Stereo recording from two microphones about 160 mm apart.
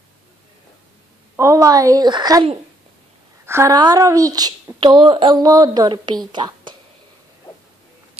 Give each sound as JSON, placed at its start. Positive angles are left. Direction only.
{"t": 1.3, "sound": "speech", "side_deg": -20}
{"t": 3.4, "sound": "speech", "side_deg": -20}